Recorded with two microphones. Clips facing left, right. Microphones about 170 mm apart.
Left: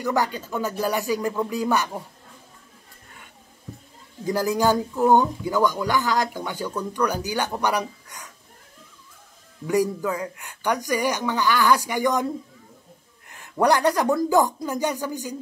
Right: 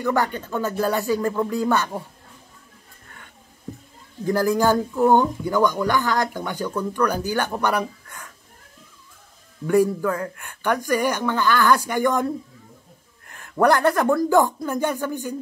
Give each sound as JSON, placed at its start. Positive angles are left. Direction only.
{"t": 0.0, "sound": "speech", "side_deg": 15}
{"t": 4.3, "sound": "speech", "side_deg": 15}
{"t": 9.8, "sound": "speech", "side_deg": 15}
{"t": 13.3, "sound": "a sound", "side_deg": 20}
{"t": 13.9, "sound": "speech", "side_deg": 20}